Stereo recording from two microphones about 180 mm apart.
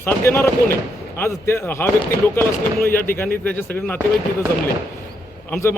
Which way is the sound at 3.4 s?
10° left (ahead or behind).